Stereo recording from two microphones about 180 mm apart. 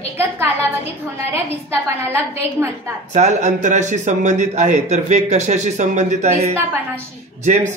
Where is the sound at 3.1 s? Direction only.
40° right (ahead or behind).